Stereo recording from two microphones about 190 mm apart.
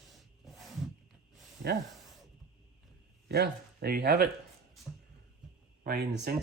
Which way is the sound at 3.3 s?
55° right (ahead or behind).